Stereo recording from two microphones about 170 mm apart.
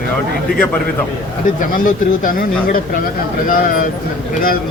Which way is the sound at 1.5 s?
50° left (ahead or behind).